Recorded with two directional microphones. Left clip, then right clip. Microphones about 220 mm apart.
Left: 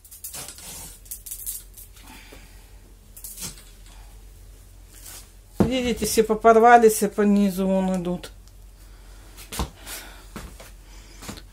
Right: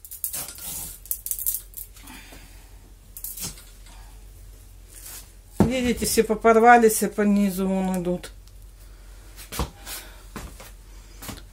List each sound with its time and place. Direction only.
5.7 s speech: 20° left (ahead or behind)